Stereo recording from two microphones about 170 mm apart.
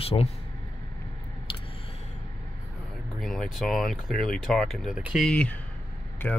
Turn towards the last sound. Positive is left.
turn(degrees=10)  # may be behind; listen again after turning